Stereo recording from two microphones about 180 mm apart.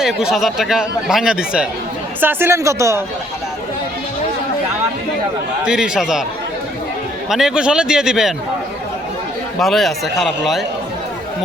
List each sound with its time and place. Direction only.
0.0 s speech: 5° right (ahead or behind)
5.6 s speech: 5° right (ahead or behind)
7.3 s speech: centre (ahead or behind)
9.6 s speech: centre (ahead or behind)